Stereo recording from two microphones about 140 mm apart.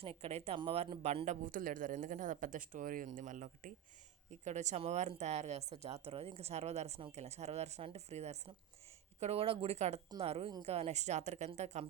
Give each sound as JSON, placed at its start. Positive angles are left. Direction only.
{"t": 0.0, "sound": "speech", "side_deg": -45}
{"t": 4.3, "sound": "a woman's voice", "side_deg": -55}